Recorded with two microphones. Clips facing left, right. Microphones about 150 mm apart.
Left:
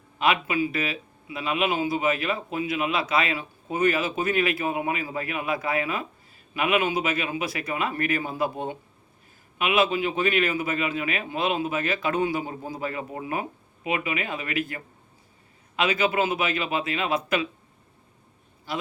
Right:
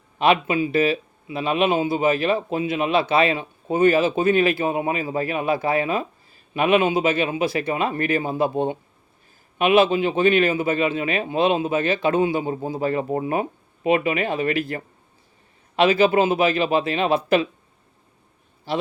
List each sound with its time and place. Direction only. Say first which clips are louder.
0.2 s a man's voice: right 5 dB; 30° right (ahead or behind)